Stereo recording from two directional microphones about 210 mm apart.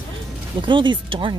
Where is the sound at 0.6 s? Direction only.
20° right (ahead or behind).